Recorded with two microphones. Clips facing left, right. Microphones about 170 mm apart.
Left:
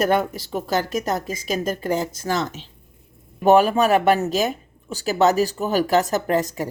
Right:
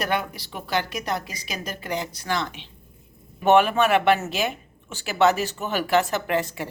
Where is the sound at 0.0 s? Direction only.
45° left (ahead or behind).